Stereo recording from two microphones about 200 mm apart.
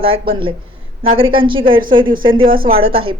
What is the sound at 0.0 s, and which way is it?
A woman's voice, 25° right (ahead or behind).